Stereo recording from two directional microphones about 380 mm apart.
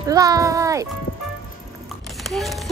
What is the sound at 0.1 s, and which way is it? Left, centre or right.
Speech, centre.